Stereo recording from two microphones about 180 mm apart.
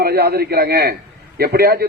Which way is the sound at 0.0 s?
60° right (ahead or behind).